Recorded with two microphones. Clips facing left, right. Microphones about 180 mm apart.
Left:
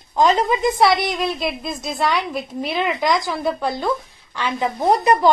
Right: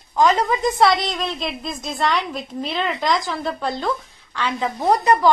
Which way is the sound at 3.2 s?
15° left (ahead or behind).